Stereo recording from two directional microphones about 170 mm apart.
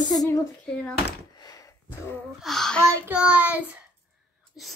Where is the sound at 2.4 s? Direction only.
5° left (ahead or behind).